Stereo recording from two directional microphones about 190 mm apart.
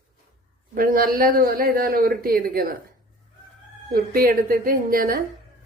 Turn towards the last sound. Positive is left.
turn(degrees=-50)  # may be behind; listen again after turning